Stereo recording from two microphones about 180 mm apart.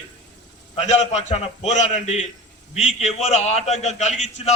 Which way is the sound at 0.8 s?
40° left (ahead or behind).